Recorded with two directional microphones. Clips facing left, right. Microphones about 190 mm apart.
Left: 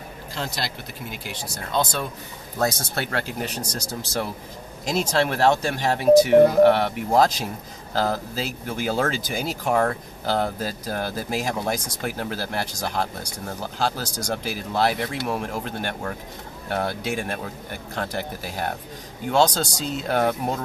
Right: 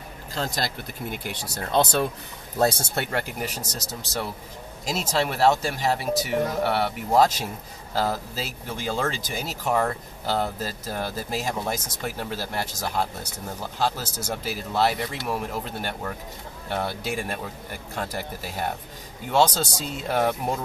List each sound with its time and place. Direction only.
0.3 s speech: 40° right (ahead or behind)
1.1 s speech: 55° right (ahead or behind)
2.6 s speech: 25° right (ahead or behind)
4.8 s speech: 5° right (ahead or behind)
8.8 s speech: 5° left (ahead or behind)
19.3 s speech: 5° right (ahead or behind)